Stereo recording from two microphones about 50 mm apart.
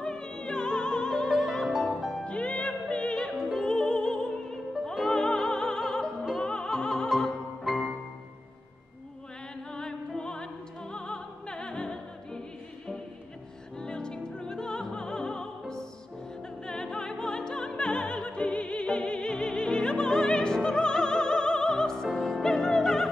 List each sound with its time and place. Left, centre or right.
0.0 s opera: centre
2.0 s music: centre
2.2 s music: left
7.6 s music: centre
9.8 s music: centre
13.7 s music: centre
16.6 s opera: centre
20.1 s music: centre